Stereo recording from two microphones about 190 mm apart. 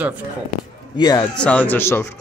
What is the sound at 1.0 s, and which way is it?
Speech, 20° left (ahead or behind).